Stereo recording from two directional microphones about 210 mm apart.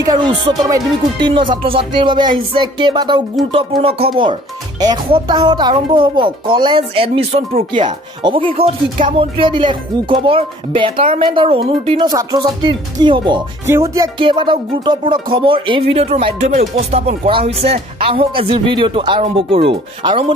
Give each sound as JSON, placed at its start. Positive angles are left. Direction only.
{"t": 0.0, "sound": "speech", "side_deg": -20}